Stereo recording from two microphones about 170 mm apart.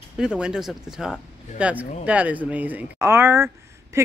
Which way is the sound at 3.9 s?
15° right (ahead or behind).